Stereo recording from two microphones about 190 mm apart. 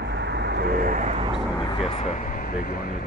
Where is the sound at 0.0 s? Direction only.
65° right (ahead or behind); by 1.4 s 35° right (ahead or behind).